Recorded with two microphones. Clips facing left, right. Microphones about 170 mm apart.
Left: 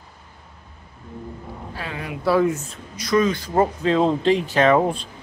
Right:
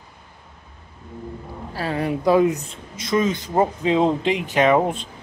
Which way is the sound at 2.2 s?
20° right (ahead or behind).